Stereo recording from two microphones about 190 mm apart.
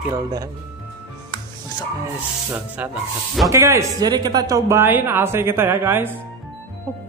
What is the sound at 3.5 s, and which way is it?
Speech, 15° right (ahead or behind).